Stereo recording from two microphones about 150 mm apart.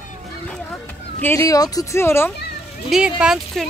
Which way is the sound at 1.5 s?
25° left (ahead or behind).